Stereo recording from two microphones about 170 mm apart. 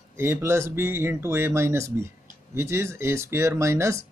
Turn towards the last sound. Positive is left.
turn(degrees=-15)  # may be behind; listen again after turning